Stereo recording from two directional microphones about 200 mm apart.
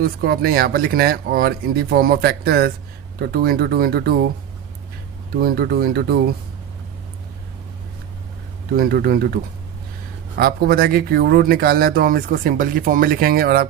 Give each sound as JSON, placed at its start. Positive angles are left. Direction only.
{"t": 0.0, "sound": "speech", "side_deg": -50}
{"t": 5.4, "sound": "speech", "side_deg": -50}
{"t": 8.7, "sound": "speech", "side_deg": -50}